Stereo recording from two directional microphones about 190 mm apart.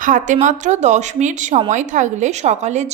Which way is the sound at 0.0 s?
40° right (ahead or behind).